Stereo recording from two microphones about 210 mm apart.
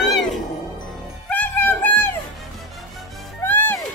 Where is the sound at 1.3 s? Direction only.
10° left (ahead or behind).